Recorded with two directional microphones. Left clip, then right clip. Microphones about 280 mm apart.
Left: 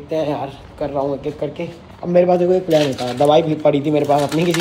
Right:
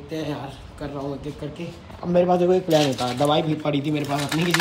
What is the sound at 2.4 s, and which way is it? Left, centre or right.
Speech, centre.